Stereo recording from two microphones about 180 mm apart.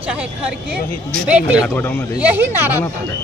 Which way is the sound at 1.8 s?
10° left (ahead or behind).